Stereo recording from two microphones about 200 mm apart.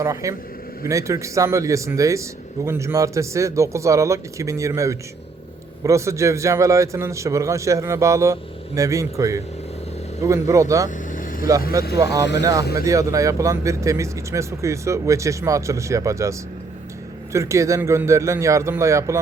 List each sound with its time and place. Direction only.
0.0 s a man's voice: 15° right (ahead or behind)
10.8 s vehicle: 40° left (ahead or behind)
11.8 s a man's voice: 15° right (ahead or behind)
17.3 s a man's voice: 15° right (ahead or behind)